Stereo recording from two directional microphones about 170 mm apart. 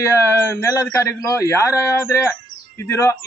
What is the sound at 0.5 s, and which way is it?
A man's voice, 20° left (ahead or behind).